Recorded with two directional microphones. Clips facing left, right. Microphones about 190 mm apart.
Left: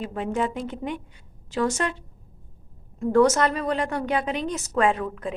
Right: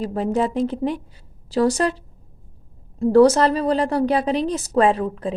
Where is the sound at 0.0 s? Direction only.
35° right (ahead or behind).